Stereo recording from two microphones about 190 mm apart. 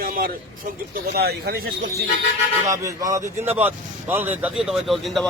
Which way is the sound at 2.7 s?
15° right (ahead or behind).